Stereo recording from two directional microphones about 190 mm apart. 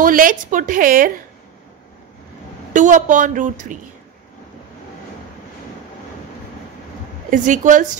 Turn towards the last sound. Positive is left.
turn(degrees=-40)  # may be behind; listen again after turning